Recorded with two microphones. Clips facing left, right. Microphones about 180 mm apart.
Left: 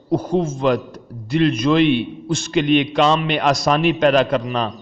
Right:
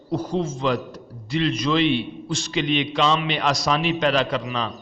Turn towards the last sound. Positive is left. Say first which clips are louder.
# left 5 dB
turn(degrees=50)  # may be behind; listen again after turning